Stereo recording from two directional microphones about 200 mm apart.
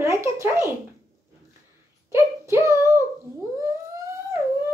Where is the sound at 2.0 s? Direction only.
15° right (ahead or behind).